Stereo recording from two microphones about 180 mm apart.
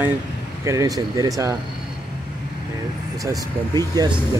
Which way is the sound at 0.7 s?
20° right (ahead or behind).